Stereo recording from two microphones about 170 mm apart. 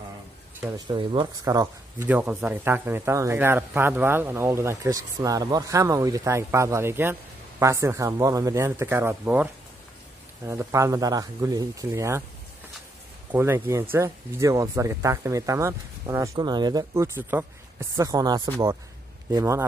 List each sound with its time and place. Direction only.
0.6 s a man's voice: 20° right (ahead or behind)
2.0 s a man's voice: 10° right (ahead or behind)
13.3 s speech: 15° right (ahead or behind)